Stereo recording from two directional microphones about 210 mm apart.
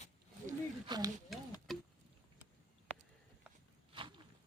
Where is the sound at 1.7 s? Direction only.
Centre (ahead or behind).